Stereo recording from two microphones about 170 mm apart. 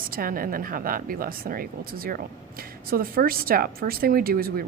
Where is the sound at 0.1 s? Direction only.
55° right (ahead or behind).